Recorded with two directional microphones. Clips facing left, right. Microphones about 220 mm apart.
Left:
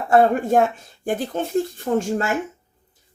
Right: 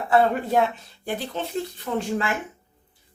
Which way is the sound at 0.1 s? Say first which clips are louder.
Left 4 dB; 45° left (ahead or behind).